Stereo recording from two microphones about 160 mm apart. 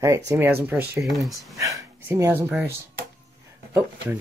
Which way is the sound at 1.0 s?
Centre (ahead or behind).